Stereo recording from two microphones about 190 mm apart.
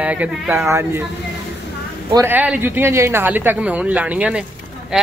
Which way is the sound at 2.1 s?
10° right (ahead or behind).